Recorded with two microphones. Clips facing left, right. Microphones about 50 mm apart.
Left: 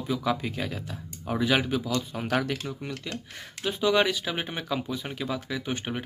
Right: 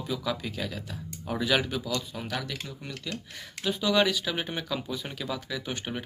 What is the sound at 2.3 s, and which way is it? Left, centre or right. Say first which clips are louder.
Speech: left 11 dB; left.